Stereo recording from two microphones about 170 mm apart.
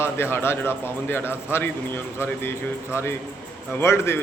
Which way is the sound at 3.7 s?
15° left (ahead or behind).